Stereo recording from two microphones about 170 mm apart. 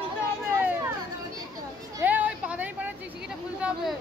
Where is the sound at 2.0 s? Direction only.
10° right (ahead or behind).